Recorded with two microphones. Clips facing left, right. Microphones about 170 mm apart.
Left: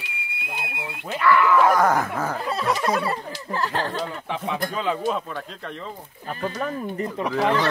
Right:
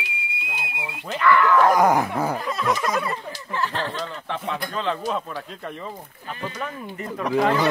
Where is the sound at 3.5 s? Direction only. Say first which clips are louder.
Left 1 dB; 40° left (ahead or behind).